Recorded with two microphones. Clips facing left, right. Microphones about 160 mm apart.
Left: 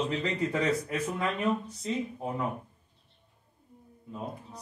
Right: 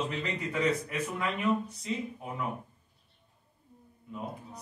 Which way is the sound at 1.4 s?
35° left (ahead or behind).